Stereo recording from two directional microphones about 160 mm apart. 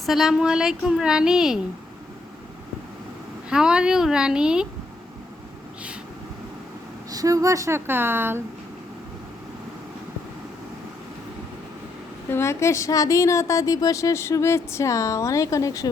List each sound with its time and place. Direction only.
0.0 s a woman's voice: centre (ahead or behind)
3.5 s a woman's voice: 5° right (ahead or behind)
7.1 s speech: 20° right (ahead or behind)
12.3 s a woman's voice: 15° left (ahead or behind)